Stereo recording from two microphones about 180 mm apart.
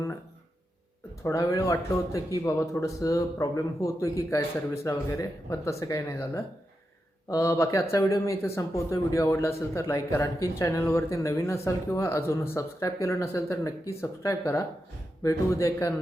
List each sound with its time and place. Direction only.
1.2 s speech: 15° left (ahead or behind)